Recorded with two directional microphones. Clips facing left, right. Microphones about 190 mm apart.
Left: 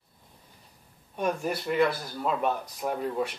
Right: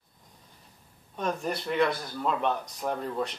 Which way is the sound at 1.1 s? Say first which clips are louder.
Left 2 dB; 10° left (ahead or behind).